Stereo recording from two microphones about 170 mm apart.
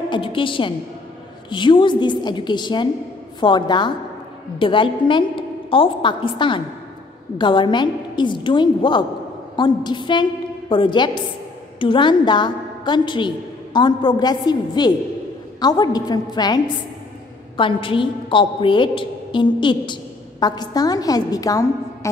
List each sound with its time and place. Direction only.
0.1 s a woman's voice: 30° left (ahead or behind)